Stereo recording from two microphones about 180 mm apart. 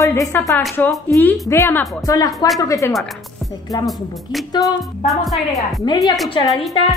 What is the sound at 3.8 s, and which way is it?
A woman's voice, centre (ahead or behind).